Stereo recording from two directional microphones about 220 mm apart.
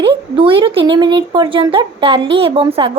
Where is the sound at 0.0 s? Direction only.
20° right (ahead or behind).